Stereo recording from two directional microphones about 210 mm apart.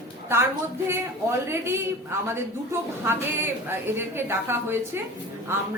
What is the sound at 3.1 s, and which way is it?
A woman's voice, 10° right (ahead or behind).